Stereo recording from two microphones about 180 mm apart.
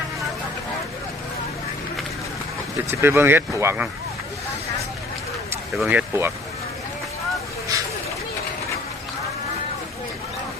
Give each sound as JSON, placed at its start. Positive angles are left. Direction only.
{"t": 2.9, "sound": "speech", "side_deg": -15}
{"t": 5.7, "sound": "speech", "side_deg": -5}
{"t": 7.7, "sound": "a sound", "side_deg": -20}